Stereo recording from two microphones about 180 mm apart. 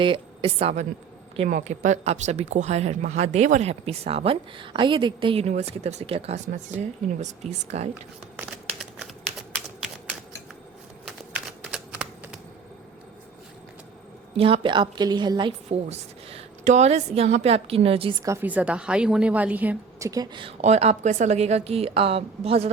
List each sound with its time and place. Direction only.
0.0 s speech: 30° right (ahead or behind)
8.4 s crumpling: 5° right (ahead or behind)
9.6 s typing: 5° right (ahead or behind)
14.3 s speech: 30° right (ahead or behind)
18.2 s a woman's voice: 15° right (ahead or behind); by 22.7 s 35° right (ahead or behind)